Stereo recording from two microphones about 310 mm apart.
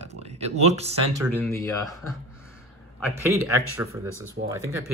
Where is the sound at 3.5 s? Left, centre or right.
Centre.